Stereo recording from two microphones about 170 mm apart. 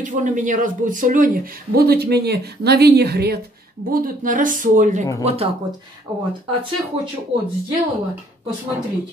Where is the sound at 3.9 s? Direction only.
55° right (ahead or behind).